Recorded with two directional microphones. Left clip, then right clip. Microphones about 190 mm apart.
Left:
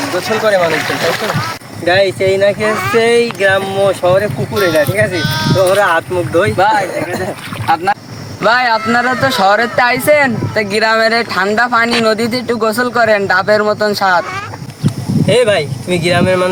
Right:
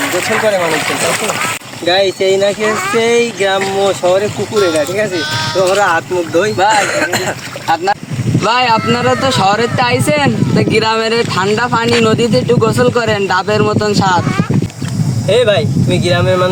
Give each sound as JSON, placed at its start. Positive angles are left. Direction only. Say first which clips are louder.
{"t": 0.4, "sound": "speech", "louder": "left 4 dB", "side_deg": 0}
{"t": 1.9, "sound": "speech", "louder": "even", "side_deg": 0}
{"t": 8.4, "sound": "speech", "louder": "even", "side_deg": 20}
{"t": 15.3, "sound": "speech", "louder": "even", "side_deg": -5}